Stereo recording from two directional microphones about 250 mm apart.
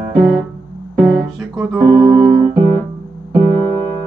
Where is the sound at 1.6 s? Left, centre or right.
Centre.